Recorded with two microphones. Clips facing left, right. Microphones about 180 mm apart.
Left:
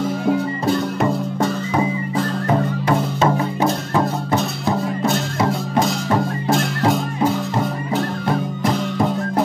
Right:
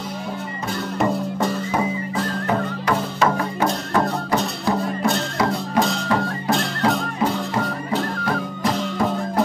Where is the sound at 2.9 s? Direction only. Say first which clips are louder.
Left 2 dB; 25° left (ahead or behind).